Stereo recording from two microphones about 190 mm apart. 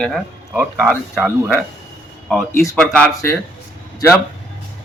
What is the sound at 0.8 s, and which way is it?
Speech, centre (ahead or behind).